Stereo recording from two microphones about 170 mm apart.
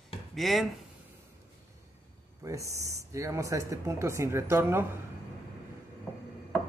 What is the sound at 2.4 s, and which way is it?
Speech, 20° right (ahead or behind).